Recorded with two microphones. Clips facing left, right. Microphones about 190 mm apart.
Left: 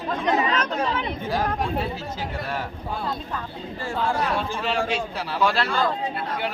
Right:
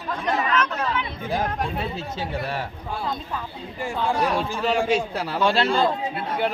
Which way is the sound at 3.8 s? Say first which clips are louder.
Right 2 dB; 15° right (ahead or behind).